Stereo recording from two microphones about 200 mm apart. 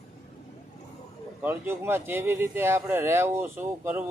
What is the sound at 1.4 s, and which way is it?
Speech, 10° right (ahead or behind).